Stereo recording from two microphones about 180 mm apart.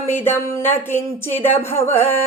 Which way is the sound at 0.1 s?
10° left (ahead or behind).